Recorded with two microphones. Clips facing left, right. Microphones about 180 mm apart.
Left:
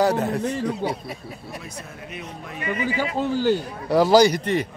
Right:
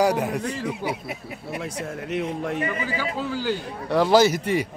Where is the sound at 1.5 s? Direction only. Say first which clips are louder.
Right 11 dB; 80° right.